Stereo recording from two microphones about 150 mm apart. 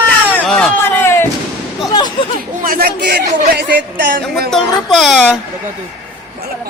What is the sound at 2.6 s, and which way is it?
Speech, 75° right (ahead or behind).